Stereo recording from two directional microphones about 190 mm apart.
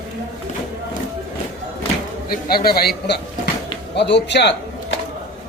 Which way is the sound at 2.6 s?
55° left (ahead or behind).